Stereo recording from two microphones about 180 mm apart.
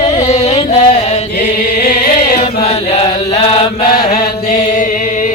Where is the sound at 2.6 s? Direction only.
35° left (ahead or behind).